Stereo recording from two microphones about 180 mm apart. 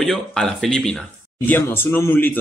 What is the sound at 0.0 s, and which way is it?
Speech, centre (ahead or behind).